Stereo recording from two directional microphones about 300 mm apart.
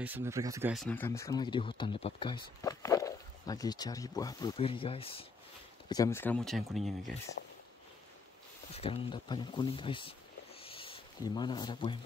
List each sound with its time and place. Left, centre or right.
0.0 s speech: centre
8.7 s speech: centre
10.6 s a sound: centre